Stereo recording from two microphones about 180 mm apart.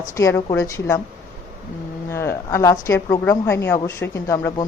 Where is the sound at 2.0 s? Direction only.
15° left (ahead or behind).